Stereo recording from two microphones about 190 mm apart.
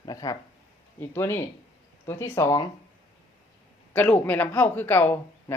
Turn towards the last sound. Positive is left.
turn(degrees=10)  # may be behind; listen again after turning